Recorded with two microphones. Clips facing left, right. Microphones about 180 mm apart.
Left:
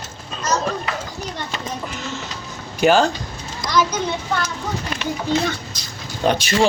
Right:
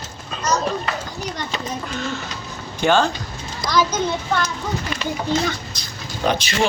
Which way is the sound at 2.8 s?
10° left (ahead or behind).